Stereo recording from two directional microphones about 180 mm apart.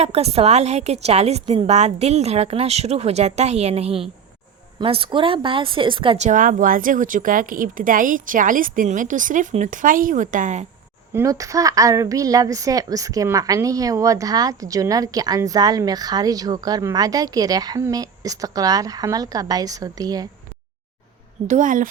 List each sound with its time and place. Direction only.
0.0 s a woman's voice: 35° right (ahead or behind)
6.2 s a woman's voice: 45° right (ahead or behind)
11.1 s a woman's voice: 15° right (ahead or behind)
21.4 s a woman's voice: 45° right (ahead or behind)